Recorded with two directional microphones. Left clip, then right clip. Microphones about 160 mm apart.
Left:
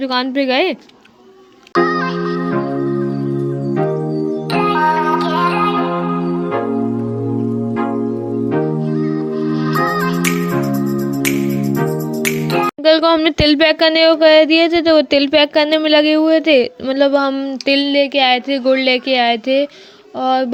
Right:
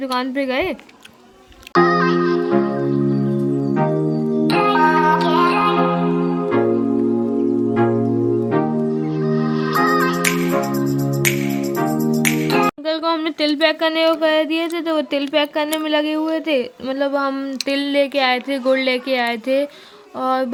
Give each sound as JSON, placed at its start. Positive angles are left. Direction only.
{"t": 0.1, "sound": "speech", "side_deg": 20}
{"t": 1.7, "sound": "music", "side_deg": 0}
{"t": 4.4, "sound": "music", "side_deg": 0}
{"t": 9.7, "sound": "music", "side_deg": 0}
{"t": 12.2, "sound": "music", "side_deg": 0}
{"t": 12.8, "sound": "speech", "side_deg": 40}
{"t": 17.8, "sound": "speech", "side_deg": 5}